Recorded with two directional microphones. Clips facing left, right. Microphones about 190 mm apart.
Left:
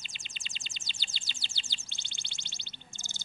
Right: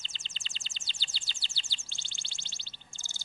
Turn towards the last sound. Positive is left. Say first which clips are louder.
# left 4 dB
turn(degrees=20)  # may be behind; listen again after turning